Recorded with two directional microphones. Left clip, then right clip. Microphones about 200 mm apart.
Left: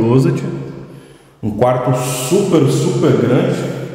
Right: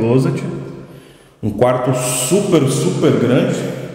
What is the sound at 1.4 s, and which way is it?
A man's voice, 20° right (ahead or behind).